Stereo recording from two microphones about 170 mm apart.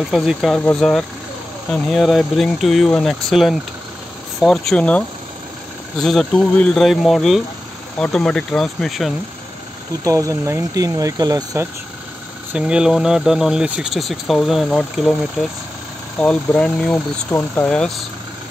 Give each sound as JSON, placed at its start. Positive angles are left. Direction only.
{"t": 0.1, "sound": "speech", "side_deg": 0}
{"t": 10.0, "sound": "speech", "side_deg": -20}
{"t": 12.5, "sound": "speech", "side_deg": -5}